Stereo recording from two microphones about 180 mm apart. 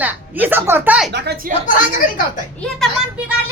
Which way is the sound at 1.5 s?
50° right (ahead or behind).